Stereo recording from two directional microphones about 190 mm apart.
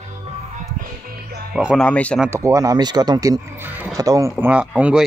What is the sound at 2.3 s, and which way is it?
Speech, 15° right (ahead or behind).